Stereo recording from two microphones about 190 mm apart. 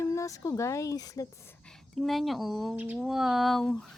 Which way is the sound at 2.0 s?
Centre (ahead or behind).